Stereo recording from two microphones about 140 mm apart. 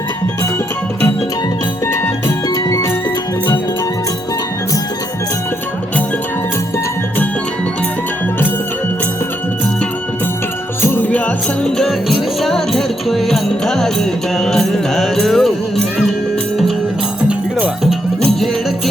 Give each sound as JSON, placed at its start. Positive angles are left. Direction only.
{"t": 1.9, "sound": "music", "side_deg": 20}
{"t": 10.8, "sound": "music", "side_deg": 15}
{"t": 11.6, "sound": "music", "side_deg": 0}
{"t": 17.2, "sound": "music", "side_deg": -10}